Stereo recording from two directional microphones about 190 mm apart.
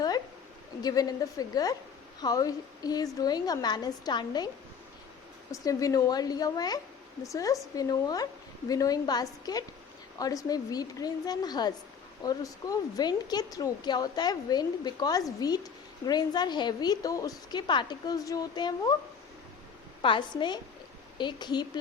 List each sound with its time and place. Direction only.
0.8 s speech: 20° left (ahead or behind)
5.5 s speech: 15° left (ahead or behind)
20.0 s speech: 25° left (ahead or behind)